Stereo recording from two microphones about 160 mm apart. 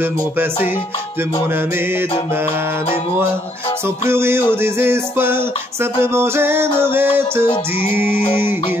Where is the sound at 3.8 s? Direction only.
15° right (ahead or behind).